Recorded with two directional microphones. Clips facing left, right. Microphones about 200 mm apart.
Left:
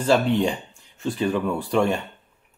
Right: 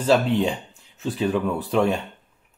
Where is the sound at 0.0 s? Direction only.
5° right (ahead or behind).